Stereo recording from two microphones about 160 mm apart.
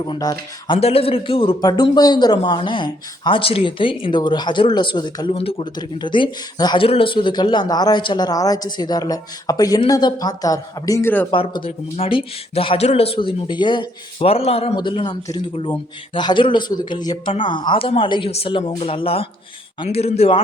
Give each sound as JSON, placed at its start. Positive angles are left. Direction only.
{"t": 0.0, "sound": "a man's voice", "side_deg": 25}
{"t": 0.8, "sound": "a man's voice", "side_deg": 40}
{"t": 11.3, "sound": "speech", "side_deg": 30}